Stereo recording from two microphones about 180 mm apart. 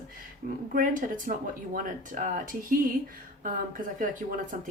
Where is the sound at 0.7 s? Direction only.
45° right (ahead or behind).